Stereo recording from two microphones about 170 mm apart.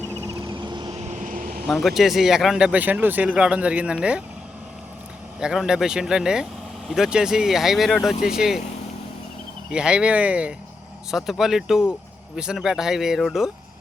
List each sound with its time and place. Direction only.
0.3 s a sound: 25° right (ahead or behind)
0.9 s vehicle: 45° right (ahead or behind)
1.6 s speech: centre (ahead or behind)
5.4 s speech: 5° right (ahead or behind)
9.7 s speech: 5° right (ahead or behind)